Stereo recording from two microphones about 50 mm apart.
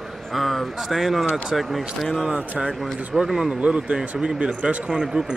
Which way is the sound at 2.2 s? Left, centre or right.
Centre.